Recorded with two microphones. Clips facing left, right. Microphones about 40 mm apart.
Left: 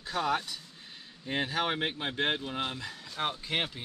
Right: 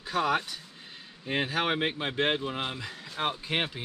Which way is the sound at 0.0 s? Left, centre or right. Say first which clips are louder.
Right 3 dB; centre.